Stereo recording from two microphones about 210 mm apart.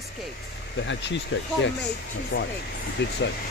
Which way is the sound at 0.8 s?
60° left (ahead or behind).